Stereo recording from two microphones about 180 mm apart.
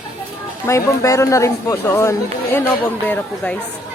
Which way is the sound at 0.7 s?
15° left (ahead or behind).